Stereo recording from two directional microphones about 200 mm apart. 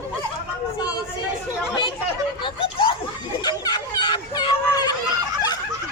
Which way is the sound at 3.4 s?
20° left (ahead or behind).